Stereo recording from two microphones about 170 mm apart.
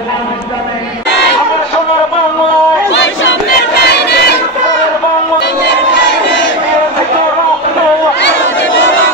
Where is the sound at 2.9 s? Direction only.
90° left.